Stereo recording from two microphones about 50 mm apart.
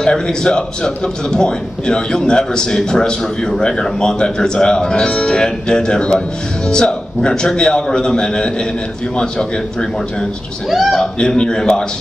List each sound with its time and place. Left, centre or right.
0.0 s a man's voice: centre
10.7 s a man's voice: centre
11.0 s a man's voice: centre